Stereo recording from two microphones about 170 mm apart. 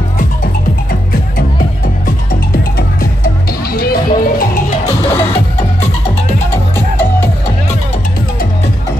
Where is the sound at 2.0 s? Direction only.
55° left (ahead or behind).